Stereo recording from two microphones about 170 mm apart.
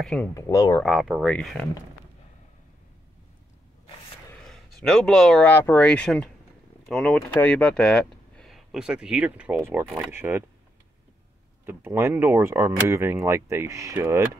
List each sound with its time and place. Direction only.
0.0 s speech: 5° left (ahead or behind)
0.3 s speech: 20° left (ahead or behind)
0.8 s speech: centre (ahead or behind)
4.5 s speech: centre (ahead or behind)
11.6 s speech: 15° right (ahead or behind)